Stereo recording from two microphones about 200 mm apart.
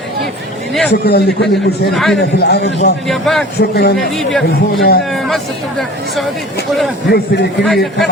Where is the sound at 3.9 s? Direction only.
Centre (ahead or behind).